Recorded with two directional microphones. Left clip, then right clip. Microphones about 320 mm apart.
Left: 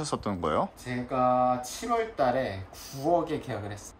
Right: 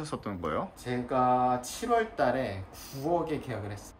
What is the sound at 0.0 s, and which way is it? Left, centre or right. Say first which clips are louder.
Speech: left 5 dB; centre.